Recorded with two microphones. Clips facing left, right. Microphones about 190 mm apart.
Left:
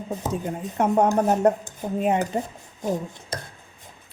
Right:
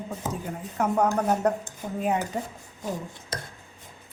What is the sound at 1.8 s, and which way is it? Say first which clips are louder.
Dishes: left 6 dB; 35° left (ahead or behind).